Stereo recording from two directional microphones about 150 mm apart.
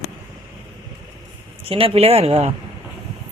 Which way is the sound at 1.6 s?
40° right (ahead or behind).